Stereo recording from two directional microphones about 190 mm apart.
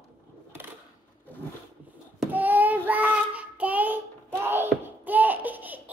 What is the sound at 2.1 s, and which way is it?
Child singing, 10° right (ahead or behind).